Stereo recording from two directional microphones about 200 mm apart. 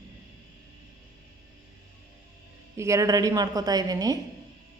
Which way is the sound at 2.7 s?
15° right (ahead or behind).